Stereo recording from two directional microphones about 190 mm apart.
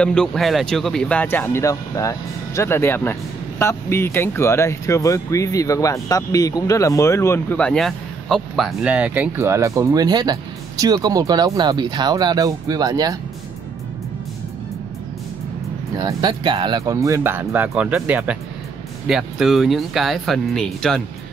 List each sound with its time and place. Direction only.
0.0 s speech: 5° left (ahead or behind); by 13.2 s 20° right (ahead or behind)
16.0 s speech: 20° right (ahead or behind); by 21.0 s centre (ahead or behind)